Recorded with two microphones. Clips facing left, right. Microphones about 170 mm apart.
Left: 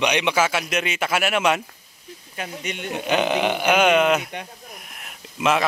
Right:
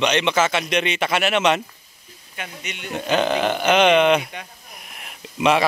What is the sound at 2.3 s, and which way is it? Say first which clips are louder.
Speech: left 4 dB; 40° left (ahead or behind).